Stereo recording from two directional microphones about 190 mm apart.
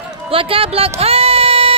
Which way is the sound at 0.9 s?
30° right (ahead or behind).